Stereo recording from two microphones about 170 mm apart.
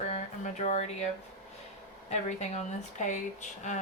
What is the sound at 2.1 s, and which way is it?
Speech, 40° left (ahead or behind).